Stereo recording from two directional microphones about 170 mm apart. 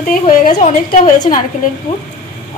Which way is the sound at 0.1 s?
55° left (ahead or behind).